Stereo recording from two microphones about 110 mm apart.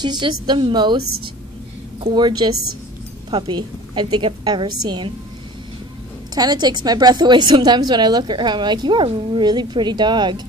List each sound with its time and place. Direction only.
0.0 s a woman's voice: 40° right (ahead or behind)
6.3 s a woman's voice: 35° right (ahead or behind)